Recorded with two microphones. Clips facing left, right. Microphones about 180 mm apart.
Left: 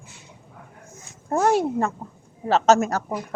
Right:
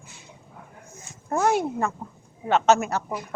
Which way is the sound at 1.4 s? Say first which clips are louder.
Left 3 dB; 35° left (ahead or behind).